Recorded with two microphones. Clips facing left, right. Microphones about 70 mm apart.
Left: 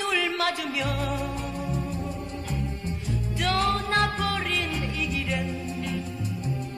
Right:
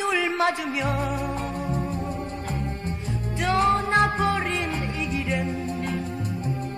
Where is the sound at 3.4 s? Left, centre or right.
Right.